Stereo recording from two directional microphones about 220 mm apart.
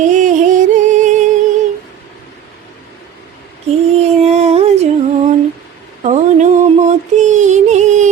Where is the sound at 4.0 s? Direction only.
30° right (ahead or behind).